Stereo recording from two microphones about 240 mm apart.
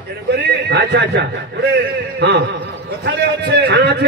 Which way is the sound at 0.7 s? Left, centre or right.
Right.